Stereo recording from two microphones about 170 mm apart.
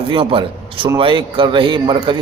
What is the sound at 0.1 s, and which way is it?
A man's voice, 30° right (ahead or behind).